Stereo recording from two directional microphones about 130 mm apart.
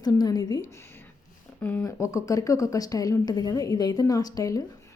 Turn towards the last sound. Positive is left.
turn(degrees=25)  # may be behind; listen again after turning